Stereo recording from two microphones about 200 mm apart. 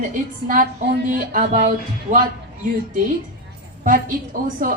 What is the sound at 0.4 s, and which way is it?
A man's voice, 45° right (ahead or behind).